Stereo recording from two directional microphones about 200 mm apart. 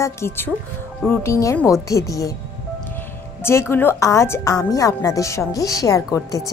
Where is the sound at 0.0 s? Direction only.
15° left (ahead or behind).